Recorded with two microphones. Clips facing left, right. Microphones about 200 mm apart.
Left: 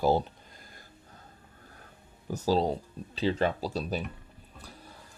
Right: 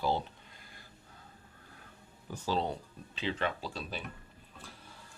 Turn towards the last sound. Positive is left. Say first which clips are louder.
# left 8 dB
turn(degrees=40)  # may be behind; listen again after turning